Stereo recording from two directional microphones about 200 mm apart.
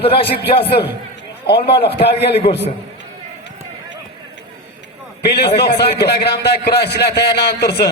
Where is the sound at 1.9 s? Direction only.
30° left (ahead or behind).